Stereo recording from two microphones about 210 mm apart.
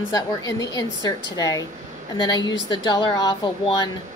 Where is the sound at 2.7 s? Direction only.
20° left (ahead or behind).